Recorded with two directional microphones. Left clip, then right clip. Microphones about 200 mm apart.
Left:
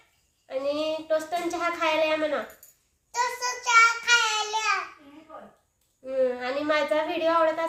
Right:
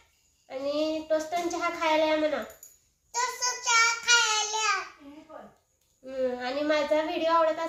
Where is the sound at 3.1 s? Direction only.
10° right (ahead or behind).